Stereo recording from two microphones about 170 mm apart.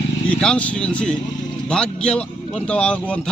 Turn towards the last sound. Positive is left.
turn(degrees=5)  # may be behind; listen again after turning